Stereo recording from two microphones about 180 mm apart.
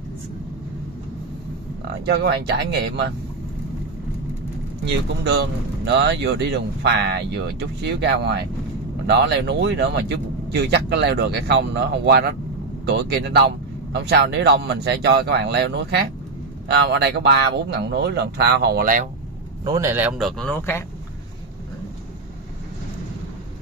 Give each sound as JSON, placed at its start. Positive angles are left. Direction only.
{"t": 2.0, "sound": "speech", "side_deg": -70}
{"t": 4.8, "sound": "speech", "side_deg": -70}
{"t": 19.6, "sound": "a man's voice", "side_deg": -20}
{"t": 20.2, "sound": "speech", "side_deg": 5}